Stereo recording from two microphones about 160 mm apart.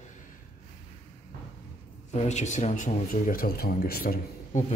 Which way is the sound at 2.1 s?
45° left (ahead or behind).